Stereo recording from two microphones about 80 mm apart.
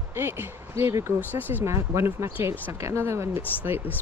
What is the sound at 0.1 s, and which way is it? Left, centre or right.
Speech, right.